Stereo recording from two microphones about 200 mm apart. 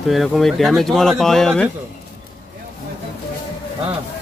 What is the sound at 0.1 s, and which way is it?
Speech, centre (ahead or behind).